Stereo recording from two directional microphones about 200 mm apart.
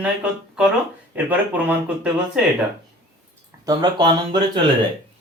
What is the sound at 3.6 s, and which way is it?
Speech, 20° right (ahead or behind).